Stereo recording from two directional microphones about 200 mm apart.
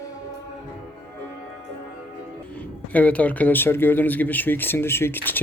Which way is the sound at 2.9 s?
5° left (ahead or behind).